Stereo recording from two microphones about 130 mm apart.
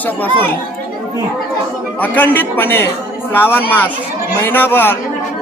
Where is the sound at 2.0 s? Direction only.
15° left (ahead or behind).